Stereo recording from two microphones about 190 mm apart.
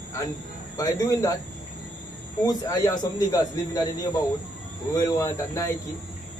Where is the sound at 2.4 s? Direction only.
20° left (ahead or behind).